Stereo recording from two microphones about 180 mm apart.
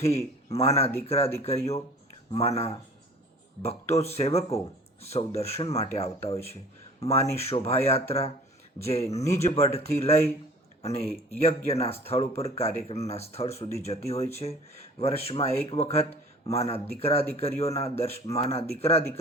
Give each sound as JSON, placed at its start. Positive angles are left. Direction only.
{"t": 0.5, "sound": "speech", "side_deg": 35}
{"t": 11.3, "sound": "speech", "side_deg": 35}